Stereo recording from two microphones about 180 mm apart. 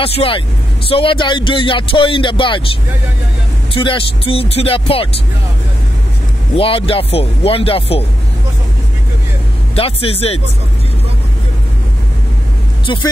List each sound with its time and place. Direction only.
0.0 s speech: 30° left (ahead or behind)
3.7 s speech: 30° left (ahead or behind)
6.5 s speech: 30° left (ahead or behind)
9.8 s speech: 30° left (ahead or behind)
12.8 s speech: 25° left (ahead or behind)